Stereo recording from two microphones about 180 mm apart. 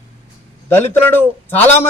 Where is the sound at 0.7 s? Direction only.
10° left (ahead or behind).